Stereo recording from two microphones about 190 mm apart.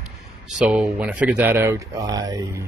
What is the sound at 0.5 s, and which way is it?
Speech, 5° right (ahead or behind).